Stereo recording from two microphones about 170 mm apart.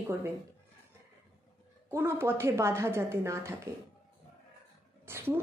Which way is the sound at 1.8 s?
15° right (ahead or behind).